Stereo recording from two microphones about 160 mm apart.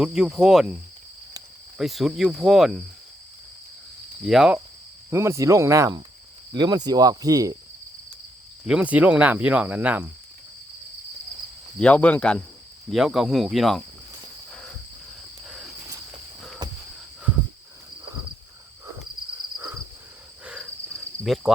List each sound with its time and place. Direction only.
0.0 s speech: 5° right (ahead or behind)
1.8 s speech: centre (ahead or behind)
4.3 s speech: 5° right (ahead or behind)
5.1 s speech: 20° right (ahead or behind)
8.6 s speech: 5° right (ahead or behind)
11.8 s speech: 10° left (ahead or behind)
15.4 s cricket: 5° right (ahead or behind)
20.4 s cricket: 10° right (ahead or behind)
21.5 s speech: 5° right (ahead or behind)